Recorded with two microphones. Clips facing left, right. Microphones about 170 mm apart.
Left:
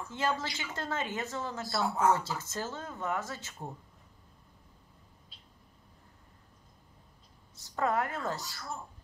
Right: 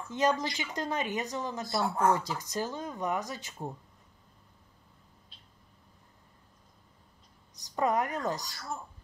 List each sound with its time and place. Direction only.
0.1 s speech: 15° right (ahead or behind)
7.5 s speech: 15° right (ahead or behind)